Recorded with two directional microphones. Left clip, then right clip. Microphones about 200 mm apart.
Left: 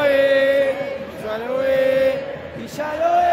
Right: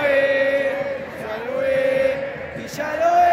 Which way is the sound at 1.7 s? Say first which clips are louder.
Left 2 dB; 25° left (ahead or behind).